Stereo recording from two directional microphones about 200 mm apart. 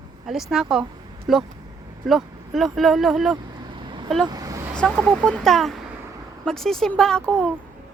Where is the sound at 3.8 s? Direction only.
25° right (ahead or behind).